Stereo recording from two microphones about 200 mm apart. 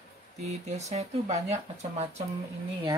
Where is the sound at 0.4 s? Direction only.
35° right (ahead or behind).